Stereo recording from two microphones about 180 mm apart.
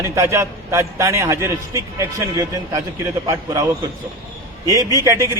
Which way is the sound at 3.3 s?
20° right (ahead or behind).